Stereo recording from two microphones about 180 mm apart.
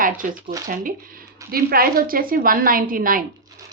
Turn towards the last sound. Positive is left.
turn(degrees=-50)  # may be behind; listen again after turning